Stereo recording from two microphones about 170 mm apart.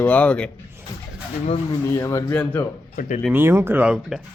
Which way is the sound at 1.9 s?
20° left (ahead or behind).